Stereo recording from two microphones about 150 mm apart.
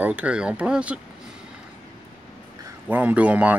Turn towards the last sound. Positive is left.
turn(degrees=-10)  # may be behind; listen again after turning